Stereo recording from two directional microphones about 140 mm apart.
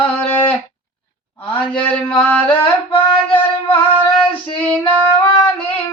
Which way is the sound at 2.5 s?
40° left (ahead or behind).